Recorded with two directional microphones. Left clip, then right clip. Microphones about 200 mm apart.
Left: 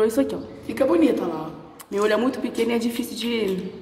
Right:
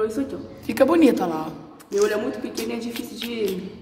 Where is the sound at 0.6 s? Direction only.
45° right (ahead or behind).